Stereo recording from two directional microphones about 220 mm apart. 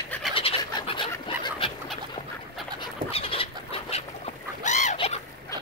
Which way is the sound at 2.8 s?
25° left (ahead or behind).